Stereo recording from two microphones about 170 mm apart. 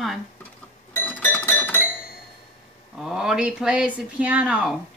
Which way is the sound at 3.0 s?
5° right (ahead or behind).